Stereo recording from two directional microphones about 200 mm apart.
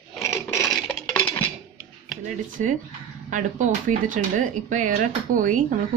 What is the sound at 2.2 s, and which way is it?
Speech, 40° right (ahead or behind).